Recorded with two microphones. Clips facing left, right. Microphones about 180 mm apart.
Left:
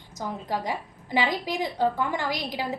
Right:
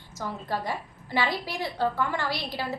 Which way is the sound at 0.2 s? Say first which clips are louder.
Left 1 dB; 15° left (ahead or behind).